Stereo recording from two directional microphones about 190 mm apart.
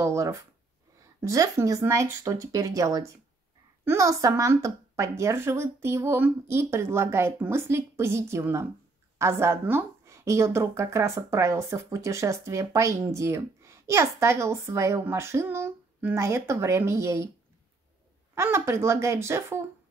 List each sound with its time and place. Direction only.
0.0 s a woman's voice: 15° right (ahead or behind)
18.3 s a woman's voice: 15° right (ahead or behind)